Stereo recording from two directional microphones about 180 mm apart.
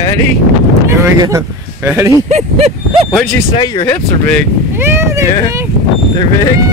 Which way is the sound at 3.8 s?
15° left (ahead or behind).